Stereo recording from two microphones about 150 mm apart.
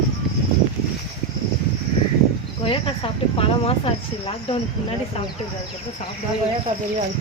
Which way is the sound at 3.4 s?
40° left (ahead or behind).